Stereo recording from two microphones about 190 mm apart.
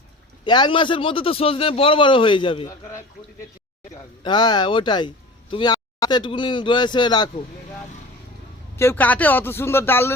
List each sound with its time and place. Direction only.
0.4 s speech: 25° left (ahead or behind)
4.2 s speech: 25° left (ahead or behind)
8.7 s a man's voice: 15° left (ahead or behind)